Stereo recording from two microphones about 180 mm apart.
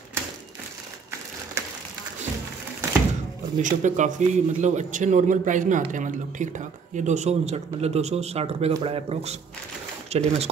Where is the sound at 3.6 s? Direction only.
45° right (ahead or behind).